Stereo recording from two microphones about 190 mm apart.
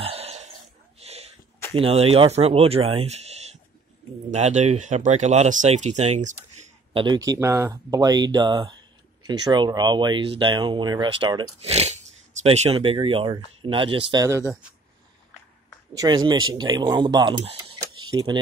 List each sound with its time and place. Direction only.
0.0 s throat clearing: 30° right (ahead or behind)
0.9 s a sound: 35° right (ahead or behind)
1.7 s speech: 30° right (ahead or behind)
6.9 s speech: 25° right (ahead or behind)
16.0 s speech: 20° right (ahead or behind)